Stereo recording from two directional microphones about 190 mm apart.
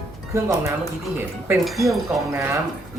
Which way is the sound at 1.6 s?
Centre (ahead or behind).